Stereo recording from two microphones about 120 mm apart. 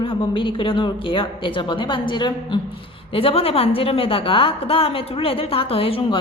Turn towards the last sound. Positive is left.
turn(degrees=50)  # may be behind; listen again after turning